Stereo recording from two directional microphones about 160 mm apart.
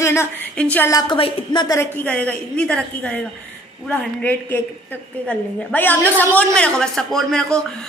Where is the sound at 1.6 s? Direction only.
15° left (ahead or behind).